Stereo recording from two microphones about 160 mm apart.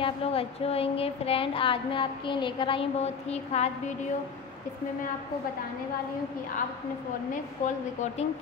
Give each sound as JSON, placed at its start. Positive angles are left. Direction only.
{"t": 0.0, "sound": "a woman's voice", "side_deg": 35}
{"t": 7.6, "sound": "speech", "side_deg": 50}